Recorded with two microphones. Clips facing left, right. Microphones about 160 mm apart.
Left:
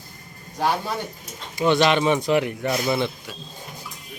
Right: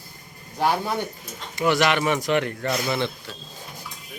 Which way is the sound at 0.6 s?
15° right (ahead or behind).